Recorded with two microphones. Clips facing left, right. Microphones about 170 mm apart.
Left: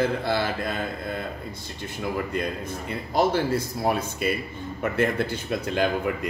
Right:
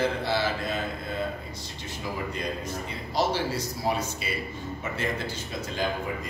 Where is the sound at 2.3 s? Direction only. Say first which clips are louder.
Left 3 dB; 55° left (ahead or behind).